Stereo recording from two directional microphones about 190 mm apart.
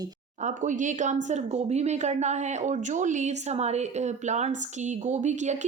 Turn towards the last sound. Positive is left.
turn(degrees=-40)  # may be behind; listen again after turning